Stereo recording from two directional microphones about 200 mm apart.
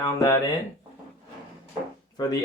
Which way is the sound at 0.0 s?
15° left (ahead or behind).